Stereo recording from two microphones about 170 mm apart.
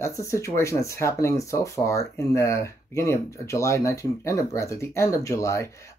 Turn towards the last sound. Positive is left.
turn(degrees=15)  # may be behind; listen again after turning